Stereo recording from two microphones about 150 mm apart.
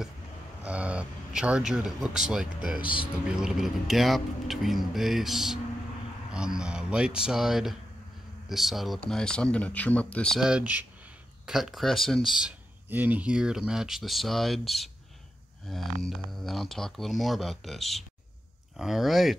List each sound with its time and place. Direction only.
0.7 s speech: 10° right (ahead or behind)
2.8 s speech: 35° left (ahead or behind)
3.3 s speech: 5° right (ahead or behind)